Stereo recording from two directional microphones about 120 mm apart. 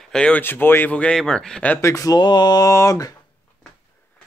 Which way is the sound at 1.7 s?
25° left (ahead or behind).